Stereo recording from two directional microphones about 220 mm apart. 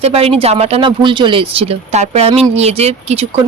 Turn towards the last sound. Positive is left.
turn(degrees=-30)  # may be behind; listen again after turning